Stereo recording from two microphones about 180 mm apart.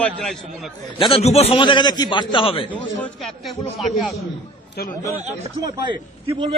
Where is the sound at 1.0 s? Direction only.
35° left (ahead or behind).